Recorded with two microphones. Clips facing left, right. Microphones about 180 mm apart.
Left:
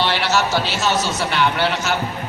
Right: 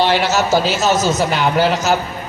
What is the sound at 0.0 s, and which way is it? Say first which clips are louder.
A man's voice: right 4 dB; 45° right (ahead or behind).